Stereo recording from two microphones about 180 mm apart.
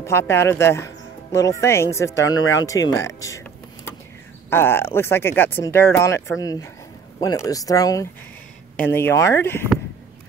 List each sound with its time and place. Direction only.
0.0 s speech: 15° left (ahead or behind)
4.5 s speech: 15° left (ahead or behind)